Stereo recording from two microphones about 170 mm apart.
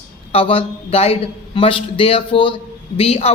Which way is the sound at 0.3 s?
35° left (ahead or behind).